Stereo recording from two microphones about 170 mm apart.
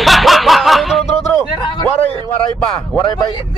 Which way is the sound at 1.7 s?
25° left (ahead or behind).